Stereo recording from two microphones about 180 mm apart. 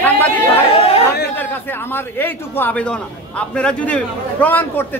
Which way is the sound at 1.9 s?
10° left (ahead or behind).